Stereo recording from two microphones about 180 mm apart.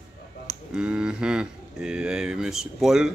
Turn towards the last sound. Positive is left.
turn(degrees=0)  # may be behind; listen again after turning